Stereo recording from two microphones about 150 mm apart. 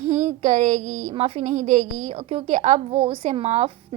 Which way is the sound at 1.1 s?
45° right (ahead or behind).